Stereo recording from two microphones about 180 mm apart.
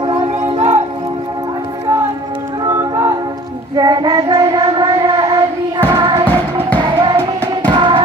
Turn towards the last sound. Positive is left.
turn(degrees=-25)  # may be behind; listen again after turning